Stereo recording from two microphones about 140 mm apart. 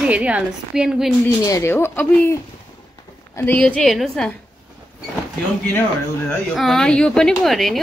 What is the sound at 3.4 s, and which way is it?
Speech, 10° left (ahead or behind).